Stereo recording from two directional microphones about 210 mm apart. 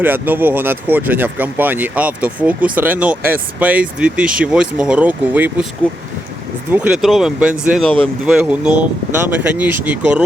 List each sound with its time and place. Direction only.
0.0 s speech: 10° right (ahead or behind)
6.7 s speech: 5° right (ahead or behind)